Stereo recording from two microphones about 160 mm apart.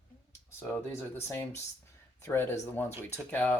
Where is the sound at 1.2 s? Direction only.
15° left (ahead or behind).